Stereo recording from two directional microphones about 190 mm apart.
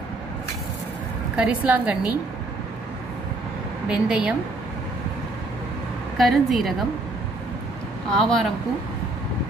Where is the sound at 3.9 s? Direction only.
5° right (ahead or behind).